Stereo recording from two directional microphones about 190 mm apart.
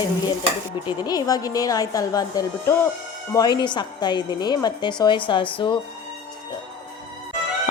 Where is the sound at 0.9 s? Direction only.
20° left (ahead or behind).